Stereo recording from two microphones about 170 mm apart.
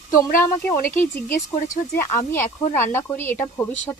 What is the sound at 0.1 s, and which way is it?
Speech, 55° left (ahead or behind).